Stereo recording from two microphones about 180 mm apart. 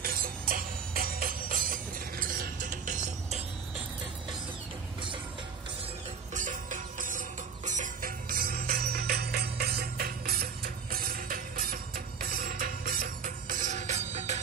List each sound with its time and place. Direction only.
0.0 s music: 55° right (ahead or behind)
6.3 s music: 45° right (ahead or behind)